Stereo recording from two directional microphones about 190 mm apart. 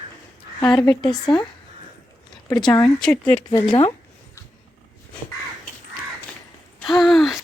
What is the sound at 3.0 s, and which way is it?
Speech, 5° left (ahead or behind).